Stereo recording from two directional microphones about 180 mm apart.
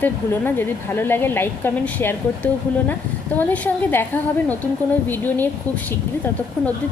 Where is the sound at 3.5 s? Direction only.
10° left (ahead or behind).